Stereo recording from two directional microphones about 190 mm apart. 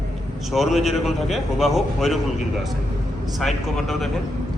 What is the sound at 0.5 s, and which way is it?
A man's voice, centre (ahead or behind).